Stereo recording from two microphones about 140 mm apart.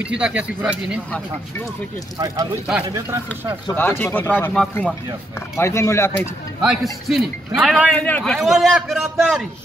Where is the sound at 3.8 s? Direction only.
15° left (ahead or behind).